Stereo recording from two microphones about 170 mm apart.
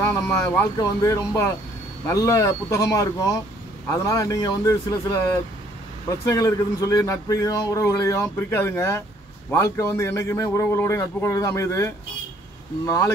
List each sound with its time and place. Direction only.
0.1 s a man's voice: 15° left (ahead or behind)